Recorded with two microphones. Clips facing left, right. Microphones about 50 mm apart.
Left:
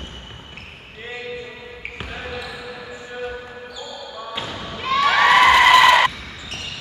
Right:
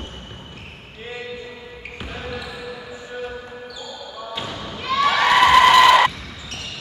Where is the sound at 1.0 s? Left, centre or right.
Centre.